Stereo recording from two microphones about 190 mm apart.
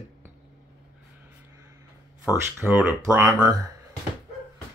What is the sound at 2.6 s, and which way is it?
Speech, 10° right (ahead or behind).